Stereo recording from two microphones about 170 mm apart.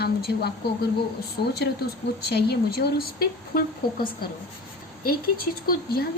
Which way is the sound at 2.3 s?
70° left (ahead or behind).